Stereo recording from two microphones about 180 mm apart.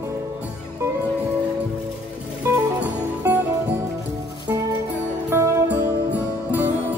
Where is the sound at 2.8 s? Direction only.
10° right (ahead or behind).